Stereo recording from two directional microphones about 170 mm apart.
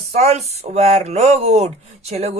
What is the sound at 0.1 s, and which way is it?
Speech, 40° right (ahead or behind).